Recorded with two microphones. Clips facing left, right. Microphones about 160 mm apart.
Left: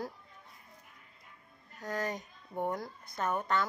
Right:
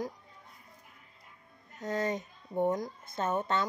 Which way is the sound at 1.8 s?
25° right (ahead or behind).